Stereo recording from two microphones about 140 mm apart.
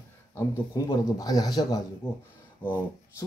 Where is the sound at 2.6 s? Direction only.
10° left (ahead or behind).